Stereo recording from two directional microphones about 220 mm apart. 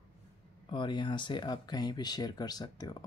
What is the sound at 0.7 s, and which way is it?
Speech, 20° left (ahead or behind).